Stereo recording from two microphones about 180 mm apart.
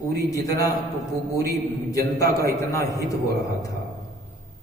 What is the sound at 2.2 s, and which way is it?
Speech, 15° left (ahead or behind).